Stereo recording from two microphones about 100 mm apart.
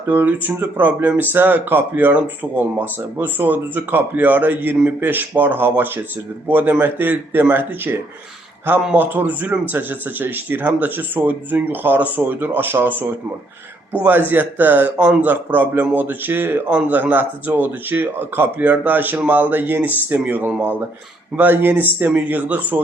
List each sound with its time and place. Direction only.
0.1 s a man's voice: 20° right (ahead or behind)
9.0 s a man's voice: 20° right (ahead or behind)